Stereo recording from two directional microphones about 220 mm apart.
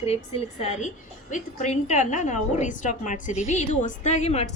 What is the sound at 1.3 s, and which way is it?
A woman's voice, 30° left (ahead or behind).